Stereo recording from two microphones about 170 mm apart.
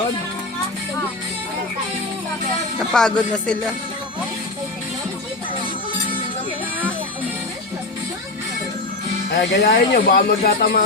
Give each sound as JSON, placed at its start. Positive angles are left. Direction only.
{"t": 2.7, "sound": "music", "side_deg": 5}
{"t": 9.3, "sound": "speech", "side_deg": 75}